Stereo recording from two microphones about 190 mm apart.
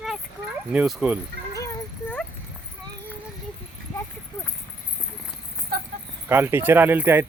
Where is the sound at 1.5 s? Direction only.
15° left (ahead or behind).